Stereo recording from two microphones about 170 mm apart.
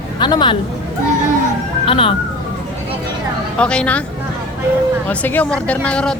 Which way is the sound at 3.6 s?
5° left (ahead or behind).